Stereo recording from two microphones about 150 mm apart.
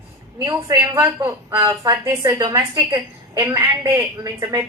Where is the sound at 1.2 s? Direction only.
30° right (ahead or behind).